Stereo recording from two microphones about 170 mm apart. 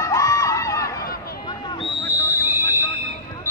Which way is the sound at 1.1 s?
60° left (ahead or behind).